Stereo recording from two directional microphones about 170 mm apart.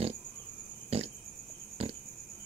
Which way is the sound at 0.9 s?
40° right (ahead or behind).